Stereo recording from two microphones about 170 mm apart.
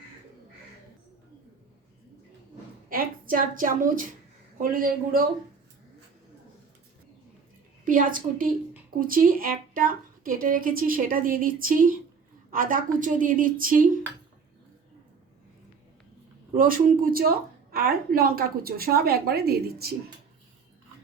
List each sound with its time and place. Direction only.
2.9 s a woman's voice: 55° right (ahead or behind)
7.9 s a woman's voice: 50° right (ahead or behind)
16.6 s a woman's voice: 55° right (ahead or behind)